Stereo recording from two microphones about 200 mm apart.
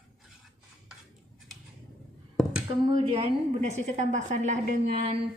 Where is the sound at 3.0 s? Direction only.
25° right (ahead or behind).